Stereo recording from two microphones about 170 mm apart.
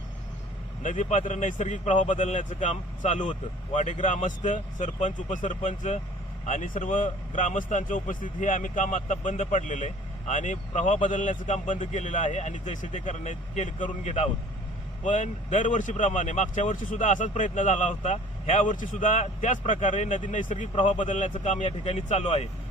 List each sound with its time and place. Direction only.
0.8 s a man's voice: 50° left (ahead or behind)